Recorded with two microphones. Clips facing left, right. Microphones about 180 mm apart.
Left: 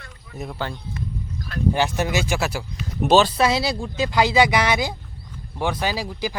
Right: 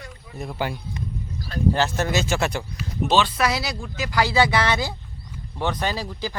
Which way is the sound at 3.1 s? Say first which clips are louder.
Left 5 dB; 40° left (ahead or behind).